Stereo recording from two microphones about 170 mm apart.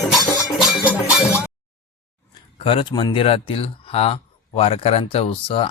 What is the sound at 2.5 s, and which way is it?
Speech, 30° left (ahead or behind).